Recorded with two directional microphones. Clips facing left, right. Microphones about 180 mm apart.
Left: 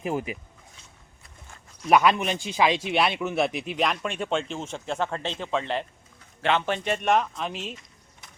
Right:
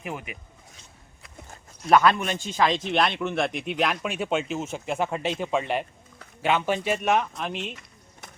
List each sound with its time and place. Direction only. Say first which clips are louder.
0.0 s speech: left 7 dB; 30° left (ahead or behind)
1.9 s a man's voice: even; 15° left (ahead or behind); by 7.8 s centre (ahead or behind)